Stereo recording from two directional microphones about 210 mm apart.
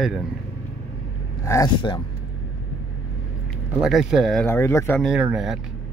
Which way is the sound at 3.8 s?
Centre (ahead or behind).